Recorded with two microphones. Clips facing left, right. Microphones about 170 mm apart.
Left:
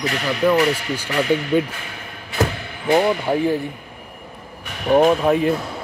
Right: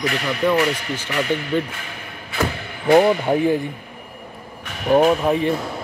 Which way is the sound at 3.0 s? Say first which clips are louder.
Right 2 dB; 15° right (ahead or behind).